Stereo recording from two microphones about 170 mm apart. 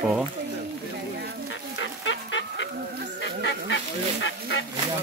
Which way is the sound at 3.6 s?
90° left.